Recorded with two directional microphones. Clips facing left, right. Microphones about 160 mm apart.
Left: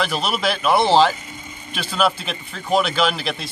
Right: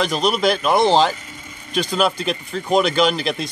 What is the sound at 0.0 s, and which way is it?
Speech, 5° left (ahead or behind).